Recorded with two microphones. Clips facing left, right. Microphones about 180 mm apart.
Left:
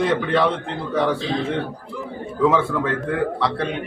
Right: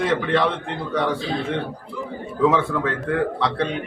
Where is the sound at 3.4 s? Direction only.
Centre (ahead or behind).